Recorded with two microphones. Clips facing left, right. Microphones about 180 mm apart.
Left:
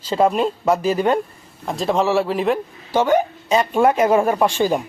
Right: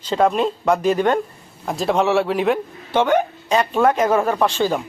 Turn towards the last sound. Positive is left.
turn(degrees=10)  # may be behind; listen again after turning